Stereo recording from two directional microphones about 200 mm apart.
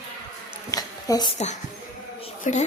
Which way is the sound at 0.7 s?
20° left (ahead or behind).